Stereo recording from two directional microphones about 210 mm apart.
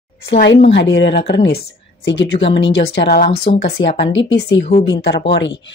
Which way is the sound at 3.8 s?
20° left (ahead or behind).